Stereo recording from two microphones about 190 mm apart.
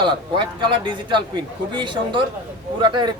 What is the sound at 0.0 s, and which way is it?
A man's voice, 25° right (ahead or behind).